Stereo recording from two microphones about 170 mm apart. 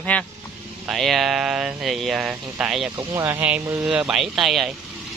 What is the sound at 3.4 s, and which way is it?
Speech, 10° right (ahead or behind).